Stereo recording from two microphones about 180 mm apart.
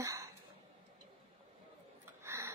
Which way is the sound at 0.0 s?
15° right (ahead or behind).